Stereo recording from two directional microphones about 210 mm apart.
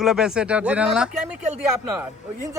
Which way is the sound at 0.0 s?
Centre (ahead or behind).